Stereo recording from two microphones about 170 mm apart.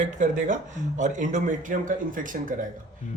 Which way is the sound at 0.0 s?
45° right (ahead or behind).